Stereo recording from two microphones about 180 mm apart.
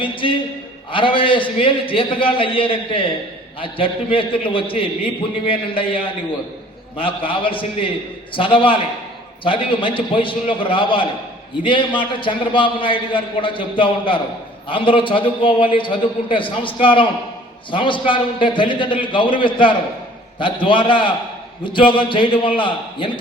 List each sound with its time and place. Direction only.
0.0 s a man's voice: 30° left (ahead or behind)